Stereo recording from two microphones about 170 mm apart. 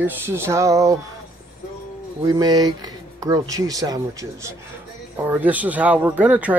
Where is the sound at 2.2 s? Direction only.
20° right (ahead or behind).